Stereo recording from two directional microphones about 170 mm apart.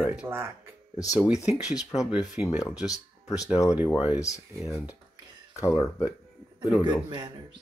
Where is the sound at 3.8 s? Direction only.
25° left (ahead or behind).